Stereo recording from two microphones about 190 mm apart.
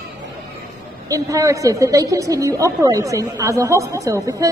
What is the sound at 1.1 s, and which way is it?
A woman's voice, 15° right (ahead or behind).